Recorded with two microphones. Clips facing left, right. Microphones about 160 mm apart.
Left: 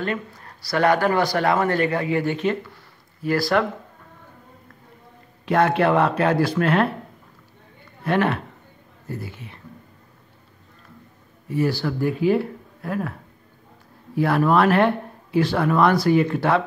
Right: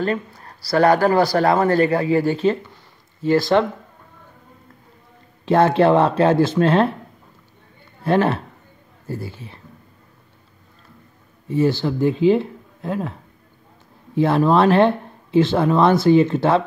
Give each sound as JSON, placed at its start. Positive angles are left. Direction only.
{"t": 0.7, "sound": "speech", "side_deg": -35}
{"t": 5.4, "sound": "speech", "side_deg": -30}
{"t": 8.0, "sound": "a man's voice", "side_deg": -30}
{"t": 11.4, "sound": "speech", "side_deg": -25}
{"t": 14.1, "sound": "speech", "side_deg": -25}